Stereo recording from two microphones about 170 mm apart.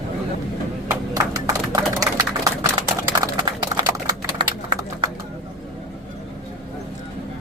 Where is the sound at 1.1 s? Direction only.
20° right (ahead or behind).